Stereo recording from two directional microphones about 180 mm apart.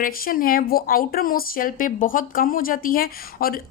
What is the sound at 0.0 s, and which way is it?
Speech, 55° left (ahead or behind).